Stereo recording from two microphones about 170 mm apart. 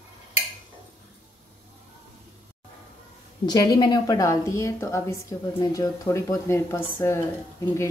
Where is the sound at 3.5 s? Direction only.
25° left (ahead or behind).